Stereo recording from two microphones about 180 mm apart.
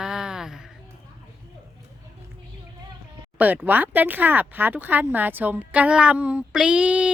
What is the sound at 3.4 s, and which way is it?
Speech, 10° right (ahead or behind).